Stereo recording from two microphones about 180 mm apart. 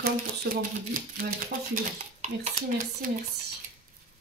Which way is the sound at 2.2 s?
45° right (ahead or behind).